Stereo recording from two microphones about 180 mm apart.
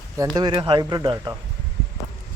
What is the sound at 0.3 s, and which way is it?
Speech, 25° right (ahead or behind).